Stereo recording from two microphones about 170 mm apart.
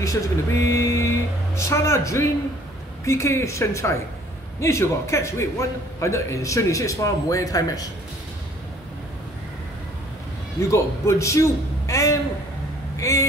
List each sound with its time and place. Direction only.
0.0 s a man's voice: 20° left (ahead or behind)
10.7 s a man's voice: 15° left (ahead or behind)
12.9 s vehicle: 20° left (ahead or behind)